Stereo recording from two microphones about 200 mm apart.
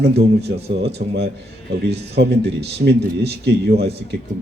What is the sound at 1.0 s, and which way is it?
Speech, 40° right (ahead or behind).